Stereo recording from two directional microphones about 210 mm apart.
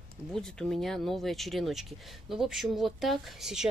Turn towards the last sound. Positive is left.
turn(degrees=0)  # may be behind; listen again after turning